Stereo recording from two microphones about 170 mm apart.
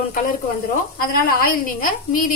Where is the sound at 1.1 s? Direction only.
60° left (ahead or behind).